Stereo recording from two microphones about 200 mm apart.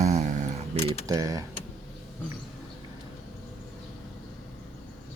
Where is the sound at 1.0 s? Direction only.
15° right (ahead or behind).